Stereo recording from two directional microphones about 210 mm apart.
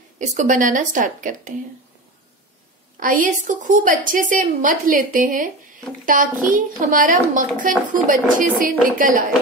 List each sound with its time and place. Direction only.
0.2 s a woman's voice: 35° right (ahead or behind)
3.0 s a woman's voice: 40° right (ahead or behind)